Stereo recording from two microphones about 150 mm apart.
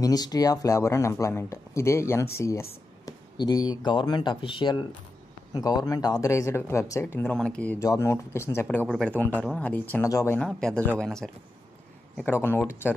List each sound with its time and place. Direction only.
0.0 s speech: 25° left (ahead or behind); by 7.8 s 10° left (ahead or behind)
7.8 s speech: 20° left (ahead or behind)
10.4 s speech: 5° left (ahead or behind)
12.3 s speech: 15° left (ahead or behind)